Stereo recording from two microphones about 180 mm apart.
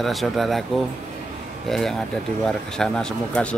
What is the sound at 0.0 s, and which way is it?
Speech, centre (ahead or behind).